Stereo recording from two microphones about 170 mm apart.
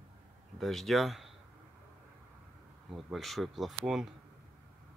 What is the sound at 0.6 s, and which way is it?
Speech, centre (ahead or behind).